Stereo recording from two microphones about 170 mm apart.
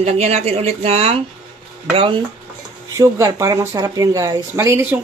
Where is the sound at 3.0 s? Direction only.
20° right (ahead or behind).